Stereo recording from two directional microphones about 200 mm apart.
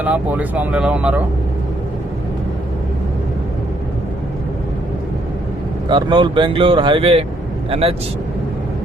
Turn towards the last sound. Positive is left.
turn(degrees=-30)  # may be behind; listen again after turning